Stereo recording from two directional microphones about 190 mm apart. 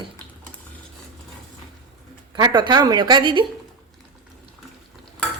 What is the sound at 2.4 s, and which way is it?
A woman's voice, 20° right (ahead or behind).